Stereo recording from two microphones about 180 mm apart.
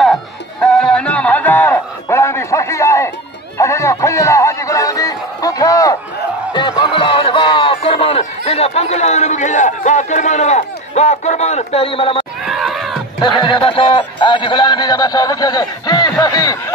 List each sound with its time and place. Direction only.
0.7 s a sound: 5° left (ahead or behind); by 12.3 s 30° left (ahead or behind)
12.4 s music: centre (ahead or behind)
13.2 s a man's voice: 25° left (ahead or behind)